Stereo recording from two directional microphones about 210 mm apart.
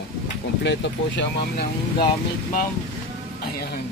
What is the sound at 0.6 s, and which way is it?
Speech, 55° left (ahead or behind).